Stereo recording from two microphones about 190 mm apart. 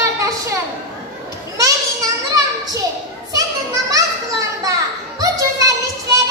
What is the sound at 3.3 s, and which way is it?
Children playing, 15° right (ahead or behind).